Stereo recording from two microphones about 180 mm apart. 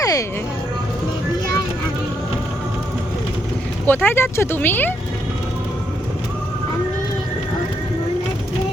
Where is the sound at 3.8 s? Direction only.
10° left (ahead or behind).